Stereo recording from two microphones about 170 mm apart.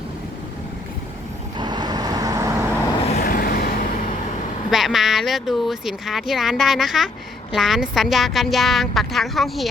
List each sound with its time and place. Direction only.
1.5 s vehicle: 25° right (ahead or behind)
3.2 s vehicle: 60° left (ahead or behind)
4.7 s speech: centre (ahead or behind)